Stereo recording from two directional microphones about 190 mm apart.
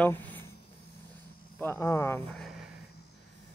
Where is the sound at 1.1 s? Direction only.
15° left (ahead or behind).